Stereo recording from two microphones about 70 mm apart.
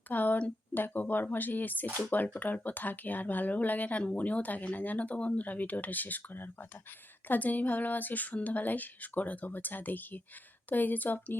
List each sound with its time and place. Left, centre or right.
0.1 s speech: left